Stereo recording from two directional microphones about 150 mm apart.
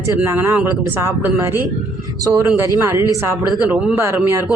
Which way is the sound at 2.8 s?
20° right (ahead or behind).